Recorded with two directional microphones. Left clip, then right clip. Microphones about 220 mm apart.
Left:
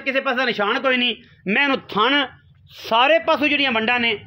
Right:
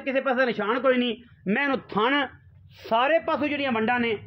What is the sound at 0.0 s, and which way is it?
A man's voice, 45° left (ahead or behind).